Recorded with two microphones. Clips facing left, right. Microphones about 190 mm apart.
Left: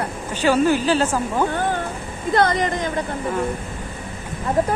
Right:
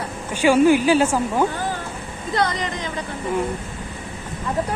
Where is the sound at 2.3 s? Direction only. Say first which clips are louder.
Left 4 dB; 50° left (ahead or behind).